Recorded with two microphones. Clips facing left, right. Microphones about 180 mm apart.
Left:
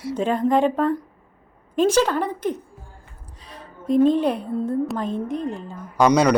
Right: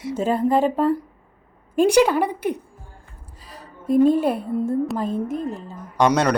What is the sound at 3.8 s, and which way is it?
A woman's voice, 5° right (ahead or behind).